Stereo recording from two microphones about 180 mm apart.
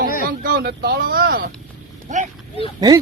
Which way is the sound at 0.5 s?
60° right (ahead or behind).